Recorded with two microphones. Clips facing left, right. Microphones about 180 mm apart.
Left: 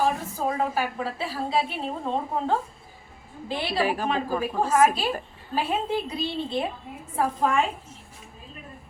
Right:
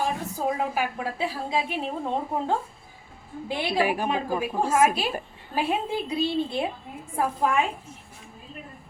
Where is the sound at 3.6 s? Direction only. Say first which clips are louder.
Right 1 dB; 15° right (ahead or behind).